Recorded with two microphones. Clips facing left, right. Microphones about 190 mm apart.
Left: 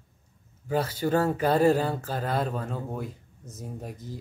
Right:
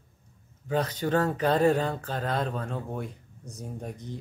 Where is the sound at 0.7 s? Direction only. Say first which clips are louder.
Left 1 dB; 10° left (ahead or behind).